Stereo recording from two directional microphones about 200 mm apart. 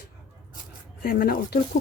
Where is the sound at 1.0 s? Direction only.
45° left (ahead or behind).